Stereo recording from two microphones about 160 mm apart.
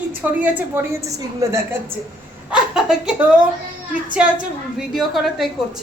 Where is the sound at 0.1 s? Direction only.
10° right (ahead or behind).